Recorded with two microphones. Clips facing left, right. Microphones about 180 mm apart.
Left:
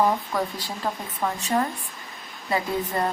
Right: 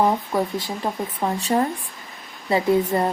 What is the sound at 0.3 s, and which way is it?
Speech, 25° right (ahead or behind).